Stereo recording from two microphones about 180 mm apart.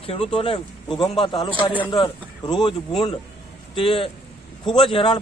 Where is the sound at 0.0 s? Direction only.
35° left (ahead or behind).